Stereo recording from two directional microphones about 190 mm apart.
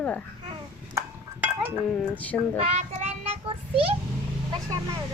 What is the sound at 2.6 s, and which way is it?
Speech, 35° right (ahead or behind).